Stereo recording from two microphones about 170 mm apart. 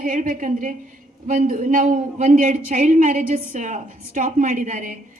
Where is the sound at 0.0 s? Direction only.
50° right (ahead or behind).